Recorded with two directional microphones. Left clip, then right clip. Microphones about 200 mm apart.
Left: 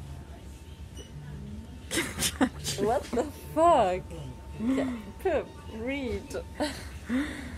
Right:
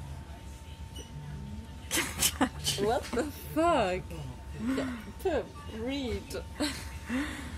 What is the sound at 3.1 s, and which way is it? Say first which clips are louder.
Speech: left 3 dB; 30° right (ahead or behind).